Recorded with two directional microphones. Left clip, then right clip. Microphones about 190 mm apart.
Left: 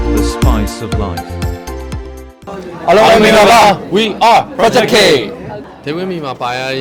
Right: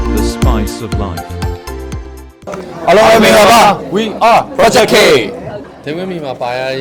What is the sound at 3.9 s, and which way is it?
Speech, 30° left (ahead or behind).